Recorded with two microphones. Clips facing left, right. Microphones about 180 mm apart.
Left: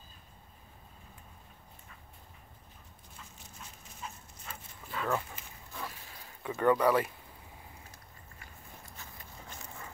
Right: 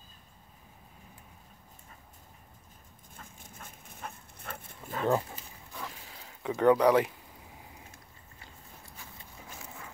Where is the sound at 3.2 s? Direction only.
50° right (ahead or behind).